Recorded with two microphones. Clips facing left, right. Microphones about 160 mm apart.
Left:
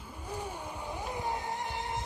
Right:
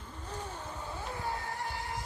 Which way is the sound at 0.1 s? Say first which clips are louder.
Left 3 dB; 10° left (ahead or behind).